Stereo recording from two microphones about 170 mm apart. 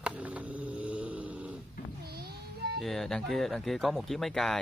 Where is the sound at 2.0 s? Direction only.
70° right (ahead or behind).